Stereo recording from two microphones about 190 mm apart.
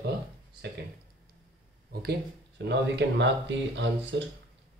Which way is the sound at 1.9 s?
55° right (ahead or behind).